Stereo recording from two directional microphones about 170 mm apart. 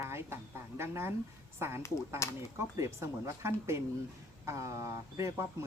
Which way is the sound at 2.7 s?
15° right (ahead or behind).